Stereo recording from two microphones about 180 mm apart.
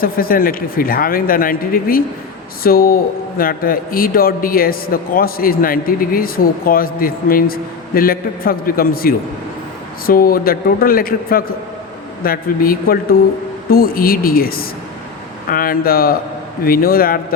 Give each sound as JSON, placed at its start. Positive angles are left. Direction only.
{"t": 0.0, "sound": "a man's voice", "side_deg": 55}